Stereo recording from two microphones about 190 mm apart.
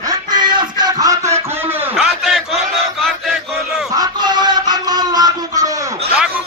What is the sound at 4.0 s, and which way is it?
Music, 20° right (ahead or behind).